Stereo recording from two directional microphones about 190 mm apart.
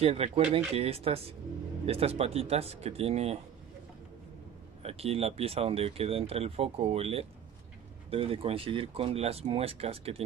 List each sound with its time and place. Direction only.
0.0 s speech: 30° right (ahead or behind)
4.8 s speech: 30° right (ahead or behind)